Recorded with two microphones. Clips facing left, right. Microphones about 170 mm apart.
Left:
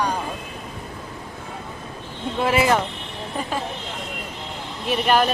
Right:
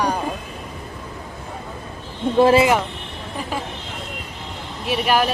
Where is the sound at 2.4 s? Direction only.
30° right (ahead or behind).